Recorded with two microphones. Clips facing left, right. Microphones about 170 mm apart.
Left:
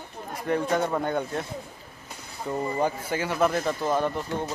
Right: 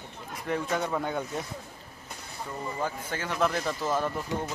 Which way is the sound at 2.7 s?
15° left (ahead or behind).